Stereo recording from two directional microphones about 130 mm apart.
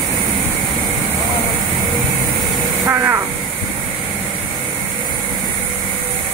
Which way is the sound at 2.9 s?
20° right (ahead or behind).